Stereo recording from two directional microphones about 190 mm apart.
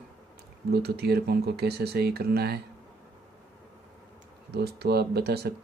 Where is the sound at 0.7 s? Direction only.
60° right (ahead or behind).